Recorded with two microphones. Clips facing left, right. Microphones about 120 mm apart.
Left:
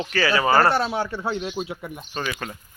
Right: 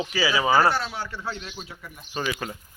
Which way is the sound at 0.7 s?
30° left (ahead or behind).